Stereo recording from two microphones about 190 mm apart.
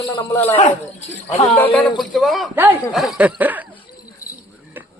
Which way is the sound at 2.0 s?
Centre (ahead or behind).